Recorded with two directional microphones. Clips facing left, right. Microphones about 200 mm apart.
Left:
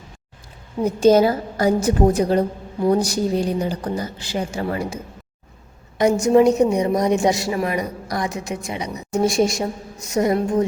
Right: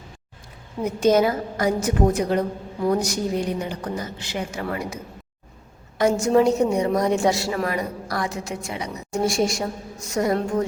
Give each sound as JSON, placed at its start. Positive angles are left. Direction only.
{"t": 0.9, "sound": "a woman's voice", "side_deg": 30}
{"t": 6.0, "sound": "a woman's voice", "side_deg": 15}